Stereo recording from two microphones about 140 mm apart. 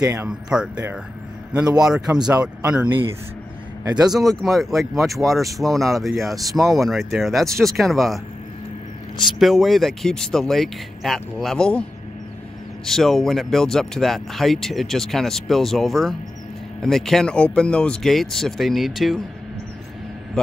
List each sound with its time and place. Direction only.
0.0 s speech: 20° right (ahead or behind)
0.3 s speech: 5° right (ahead or behind)
4.0 s speech: centre (ahead or behind)
9.4 s speech: centre (ahead or behind)
12.8 s speech: centre (ahead or behind)